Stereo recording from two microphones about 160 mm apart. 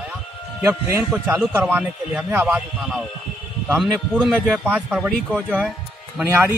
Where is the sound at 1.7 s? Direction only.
5° right (ahead or behind).